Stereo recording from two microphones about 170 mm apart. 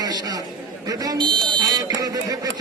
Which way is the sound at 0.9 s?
20° right (ahead or behind).